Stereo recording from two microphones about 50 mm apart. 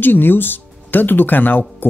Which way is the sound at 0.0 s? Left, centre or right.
Left.